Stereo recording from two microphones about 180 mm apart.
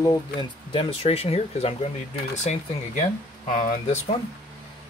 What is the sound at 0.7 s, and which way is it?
Speech, 30° left (ahead or behind).